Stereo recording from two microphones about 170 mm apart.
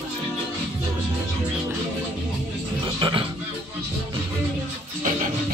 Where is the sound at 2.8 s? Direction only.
30° right (ahead or behind).